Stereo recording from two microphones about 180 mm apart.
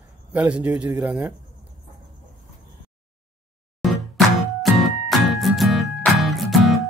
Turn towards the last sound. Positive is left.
turn(degrees=0)  # may be behind; listen again after turning